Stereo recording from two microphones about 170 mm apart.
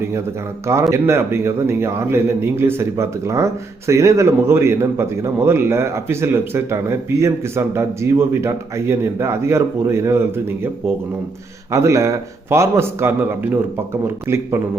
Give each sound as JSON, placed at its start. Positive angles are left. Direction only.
{"t": 0.6, "sound": "a man's voice", "side_deg": -15}